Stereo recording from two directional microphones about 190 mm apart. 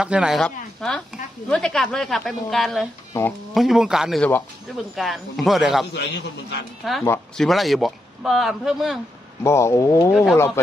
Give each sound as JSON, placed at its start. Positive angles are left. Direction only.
{"t": 0.0, "sound": "speech", "side_deg": -5}
{"t": 3.1, "sound": "speech", "side_deg": 15}
{"t": 3.5, "sound": "speech", "side_deg": 0}
{"t": 5.9, "sound": "a man's voice", "side_deg": 65}
{"t": 6.8, "sound": "speech", "side_deg": 0}
{"t": 9.4, "sound": "speech", "side_deg": 15}